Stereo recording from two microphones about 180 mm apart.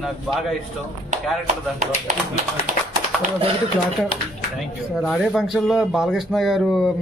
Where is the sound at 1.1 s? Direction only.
40° right (ahead or behind).